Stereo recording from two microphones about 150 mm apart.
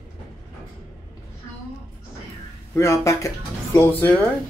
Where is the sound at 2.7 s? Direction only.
20° left (ahead or behind).